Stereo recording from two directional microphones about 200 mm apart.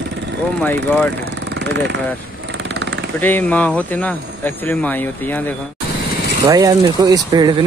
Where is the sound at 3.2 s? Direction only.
10° left (ahead or behind).